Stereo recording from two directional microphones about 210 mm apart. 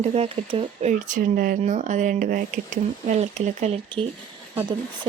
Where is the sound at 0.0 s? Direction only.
30° right (ahead or behind).